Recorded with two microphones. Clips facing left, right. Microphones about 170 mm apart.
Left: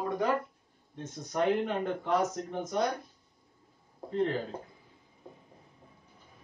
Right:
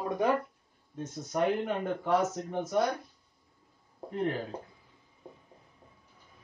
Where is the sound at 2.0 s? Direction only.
5° right (ahead or behind).